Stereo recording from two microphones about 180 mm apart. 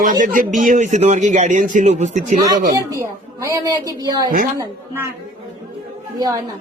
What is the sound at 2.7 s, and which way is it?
A woman's voice, 15° right (ahead or behind).